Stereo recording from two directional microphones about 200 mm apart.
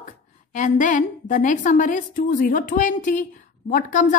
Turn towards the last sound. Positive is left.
turn(degrees=40)  # may be behind; listen again after turning